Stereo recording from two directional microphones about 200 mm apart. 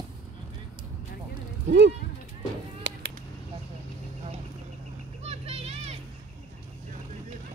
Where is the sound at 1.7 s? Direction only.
60° right (ahead or behind).